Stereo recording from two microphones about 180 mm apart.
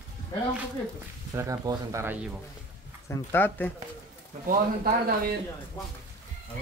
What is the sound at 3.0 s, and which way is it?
Speech, 15° left (ahead or behind).